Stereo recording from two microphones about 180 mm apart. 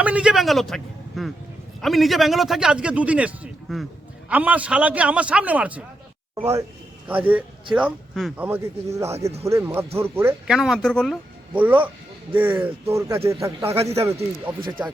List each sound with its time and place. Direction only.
0.0 s a man's voice: 5° right (ahead or behind)
10.4 s a man's voice: centre (ahead or behind)
11.5 s a man's voice: 10° right (ahead or behind)